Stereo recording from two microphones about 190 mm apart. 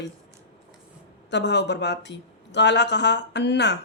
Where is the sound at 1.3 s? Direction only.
65° left (ahead or behind).